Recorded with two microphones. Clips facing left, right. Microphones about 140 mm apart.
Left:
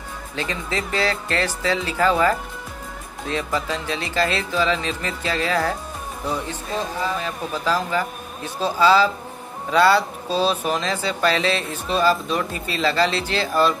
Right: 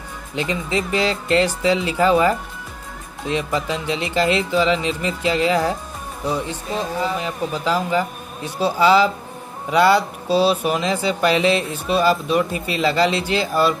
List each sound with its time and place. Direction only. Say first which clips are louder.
0.4 s speech: right 4 dB; 15° right (ahead or behind)